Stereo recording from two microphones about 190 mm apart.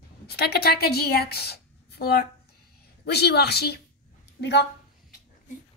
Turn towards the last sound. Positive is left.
turn(degrees=65)  # may be behind; listen again after turning